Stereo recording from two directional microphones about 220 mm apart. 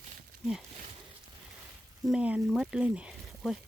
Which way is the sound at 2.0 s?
5° right (ahead or behind).